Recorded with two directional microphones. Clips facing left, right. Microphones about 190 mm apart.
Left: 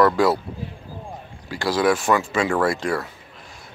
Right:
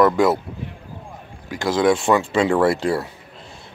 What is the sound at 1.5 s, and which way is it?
Speech, 20° right (ahead or behind).